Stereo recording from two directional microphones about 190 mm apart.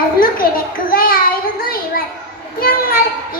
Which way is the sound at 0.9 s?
50° left (ahead or behind).